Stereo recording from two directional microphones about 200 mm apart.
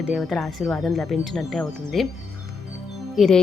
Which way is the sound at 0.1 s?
Centre (ahead or behind).